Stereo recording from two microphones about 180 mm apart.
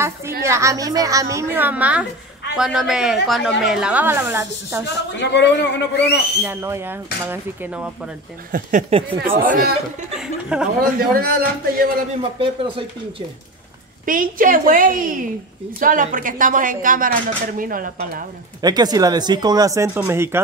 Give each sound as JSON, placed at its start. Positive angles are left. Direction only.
{"t": 0.4, "sound": "a woman's voice", "side_deg": -15}
{"t": 5.1, "sound": "a man's voice", "side_deg": 75}
{"t": 6.4, "sound": "speech", "side_deg": -10}
{"t": 8.5, "sound": "a woman's voice", "side_deg": -45}
{"t": 10.1, "sound": "a woman's voice", "side_deg": -5}
{"t": 11.0, "sound": "a woman's voice", "side_deg": -55}
{"t": 12.2, "sound": "speech", "side_deg": -30}
{"t": 14.0, "sound": "a woman's voice", "side_deg": -50}
{"t": 18.6, "sound": "speech", "side_deg": -20}